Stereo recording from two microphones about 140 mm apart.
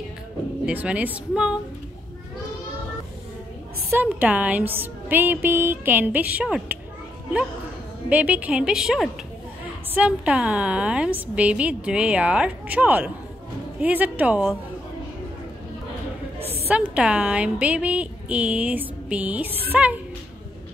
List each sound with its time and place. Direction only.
0.7 s a woman's voice: 10° right (ahead or behind)
3.9 s a woman's voice: 10° right (ahead or behind)
8.1 s a woman's voice: 10° right (ahead or behind)
16.3 s a sound: 45° right (ahead or behind)
16.7 s a woman's voice: 10° right (ahead or behind)